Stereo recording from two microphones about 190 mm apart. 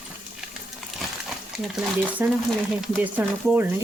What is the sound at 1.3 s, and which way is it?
Speech, centre (ahead or behind).